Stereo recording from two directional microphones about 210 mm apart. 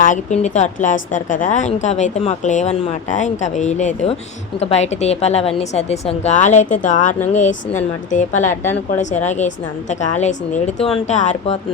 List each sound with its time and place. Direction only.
0.0 s speech: 35° left (ahead or behind)
10.8 s speech: 5° left (ahead or behind)
11.1 s speech: 35° left (ahead or behind)